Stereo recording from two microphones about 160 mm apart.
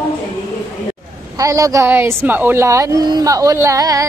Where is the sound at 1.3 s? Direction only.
20° right (ahead or behind).